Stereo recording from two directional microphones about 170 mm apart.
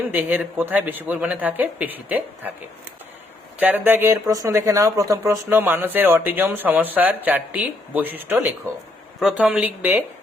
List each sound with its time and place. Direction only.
0.1 s speech: 10° right (ahead or behind)
3.6 s speech: 10° right (ahead or behind)